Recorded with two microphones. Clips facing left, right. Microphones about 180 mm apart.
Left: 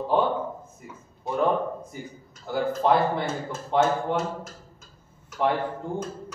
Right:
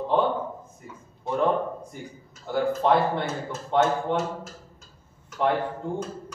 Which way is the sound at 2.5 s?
Centre (ahead or behind).